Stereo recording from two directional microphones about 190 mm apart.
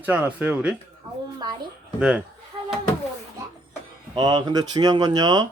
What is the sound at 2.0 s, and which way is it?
Speech, 5° right (ahead or behind).